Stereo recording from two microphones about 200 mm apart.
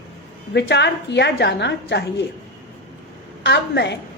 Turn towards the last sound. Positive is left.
turn(degrees=60)  # may be behind; listen again after turning